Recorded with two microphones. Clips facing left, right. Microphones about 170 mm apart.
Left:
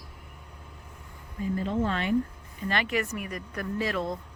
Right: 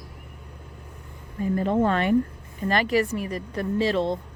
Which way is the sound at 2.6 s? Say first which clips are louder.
Right 6 dB; 40° right (ahead or behind).